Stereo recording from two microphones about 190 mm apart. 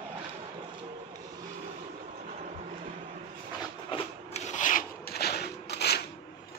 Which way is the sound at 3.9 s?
30° left (ahead or behind).